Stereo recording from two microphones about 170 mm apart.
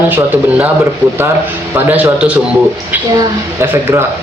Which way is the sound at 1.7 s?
10° right (ahead or behind).